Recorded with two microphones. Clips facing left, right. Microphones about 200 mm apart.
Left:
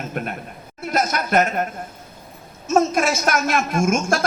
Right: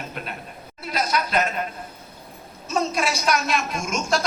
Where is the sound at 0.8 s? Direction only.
50° left (ahead or behind).